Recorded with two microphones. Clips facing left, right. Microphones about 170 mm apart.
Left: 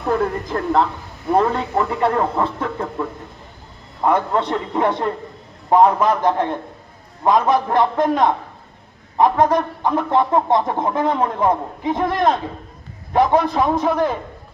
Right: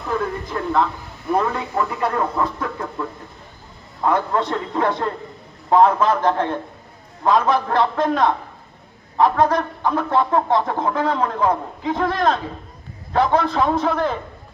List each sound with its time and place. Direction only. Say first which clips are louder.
0.5 s speech: left 1 dB; 40° left (ahead or behind)
4.0 s a man's voice: left 2 dB; 20° left (ahead or behind)